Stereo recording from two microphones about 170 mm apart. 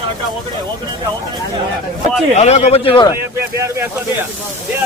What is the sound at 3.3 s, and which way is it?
Speech, 15° right (ahead or behind).